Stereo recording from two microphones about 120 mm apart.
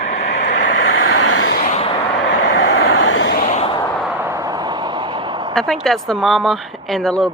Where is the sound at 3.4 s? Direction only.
85° left.